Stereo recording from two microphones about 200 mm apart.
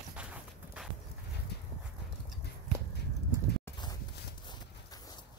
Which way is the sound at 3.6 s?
20° left (ahead or behind).